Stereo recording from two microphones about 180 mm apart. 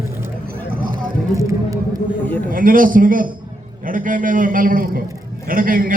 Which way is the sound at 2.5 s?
50° right (ahead or behind).